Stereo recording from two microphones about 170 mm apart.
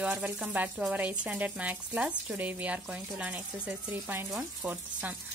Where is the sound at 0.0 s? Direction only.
5° right (ahead or behind).